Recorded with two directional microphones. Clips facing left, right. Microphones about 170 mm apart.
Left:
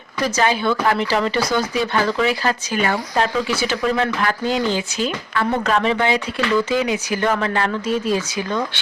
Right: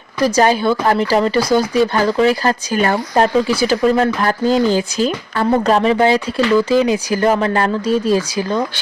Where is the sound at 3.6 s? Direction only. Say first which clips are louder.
Right 6 dB; 35° right (ahead or behind).